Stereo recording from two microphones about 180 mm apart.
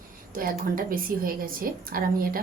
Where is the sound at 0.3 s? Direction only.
50° right (ahead or behind).